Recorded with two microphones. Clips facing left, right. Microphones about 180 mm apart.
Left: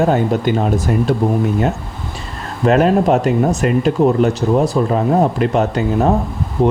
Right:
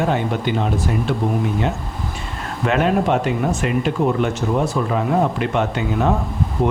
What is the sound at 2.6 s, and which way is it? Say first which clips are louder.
Speech: left 5 dB; 40° left (ahead or behind).